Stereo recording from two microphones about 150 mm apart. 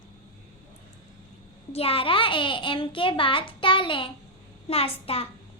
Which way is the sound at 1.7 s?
40° left (ahead or behind).